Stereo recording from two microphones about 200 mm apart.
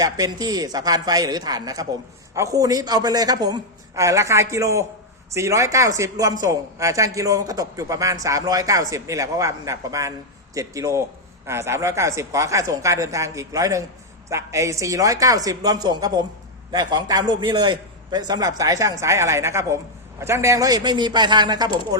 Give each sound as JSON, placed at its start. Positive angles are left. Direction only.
{"t": 0.0, "sound": "a man's voice", "side_deg": -20}